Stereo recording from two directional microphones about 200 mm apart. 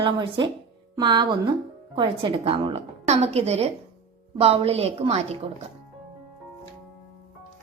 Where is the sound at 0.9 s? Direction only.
25° right (ahead or behind).